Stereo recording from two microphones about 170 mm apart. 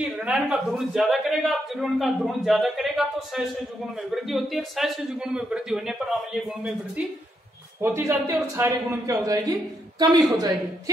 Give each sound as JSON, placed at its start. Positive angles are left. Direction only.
{"t": 0.0, "sound": "a man's voice", "side_deg": -5}
{"t": 7.8, "sound": "a man's voice", "side_deg": -15}